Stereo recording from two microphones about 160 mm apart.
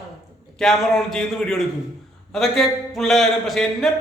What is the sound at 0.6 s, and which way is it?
A man's voice, centre (ahead or behind).